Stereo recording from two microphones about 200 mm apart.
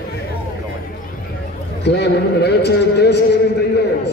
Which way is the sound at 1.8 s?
55° left (ahead or behind).